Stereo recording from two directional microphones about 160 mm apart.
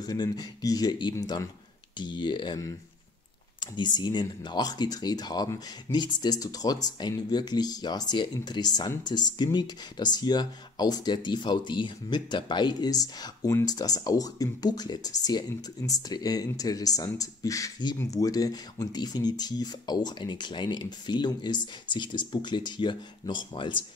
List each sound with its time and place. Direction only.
0.0 s speech: 25° left (ahead or behind)
3.7 s speech: 25° left (ahead or behind)